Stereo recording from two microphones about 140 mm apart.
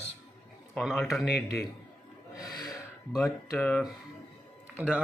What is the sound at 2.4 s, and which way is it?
Speech, 30° left (ahead or behind).